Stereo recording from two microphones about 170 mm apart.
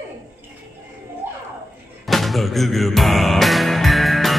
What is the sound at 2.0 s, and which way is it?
Music, centre (ahead or behind).